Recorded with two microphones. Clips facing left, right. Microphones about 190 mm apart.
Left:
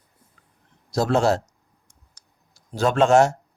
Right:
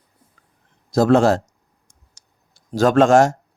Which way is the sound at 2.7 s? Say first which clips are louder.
Right 4 dB; 90° right.